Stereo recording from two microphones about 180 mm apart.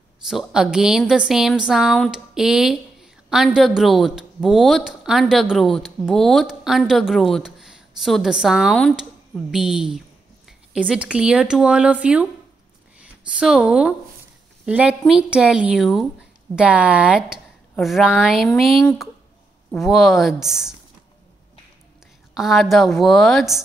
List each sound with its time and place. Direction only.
0.3 s a woman's voice: 5° right (ahead or behind)
22.3 s a woman's voice: centre (ahead or behind)